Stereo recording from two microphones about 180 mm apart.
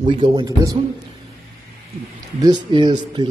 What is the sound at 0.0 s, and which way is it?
Speech, 30° right (ahead or behind).